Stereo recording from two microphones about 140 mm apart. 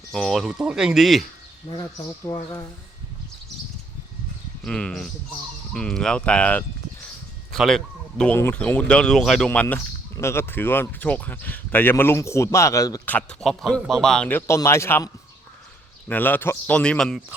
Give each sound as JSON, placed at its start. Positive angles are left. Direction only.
{"t": 0.1, "sound": "speech", "side_deg": 0}
{"t": 1.6, "sound": "speech", "side_deg": 35}
{"t": 4.6, "sound": "a man's voice", "side_deg": 5}
{"t": 8.4, "sound": "speech", "side_deg": 15}
{"t": 13.1, "sound": "speech", "side_deg": 5}
{"t": 16.0, "sound": "speech", "side_deg": 15}